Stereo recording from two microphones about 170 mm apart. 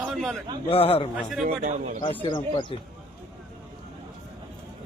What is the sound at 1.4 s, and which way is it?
Speech, 50° right (ahead or behind).